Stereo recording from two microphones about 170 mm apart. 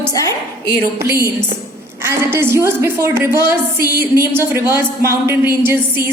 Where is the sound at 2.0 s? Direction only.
15° right (ahead or behind).